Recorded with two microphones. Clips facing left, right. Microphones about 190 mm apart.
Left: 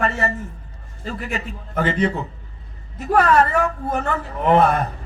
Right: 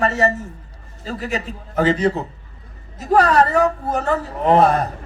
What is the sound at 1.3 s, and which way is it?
A man's voice, 40° right (ahead or behind).